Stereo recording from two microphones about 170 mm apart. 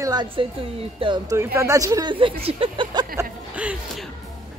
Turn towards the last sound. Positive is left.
turn(degrees=-5)  # may be behind; listen again after turning